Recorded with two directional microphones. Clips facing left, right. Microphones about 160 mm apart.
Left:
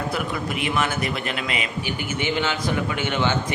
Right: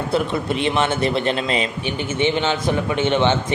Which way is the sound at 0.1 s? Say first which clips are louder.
Right 6 dB; 30° right (ahead or behind).